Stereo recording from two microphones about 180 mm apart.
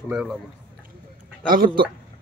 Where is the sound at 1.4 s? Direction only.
50° right (ahead or behind).